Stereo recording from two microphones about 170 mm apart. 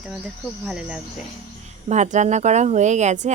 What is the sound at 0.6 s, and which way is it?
Speech, 5° right (ahead or behind).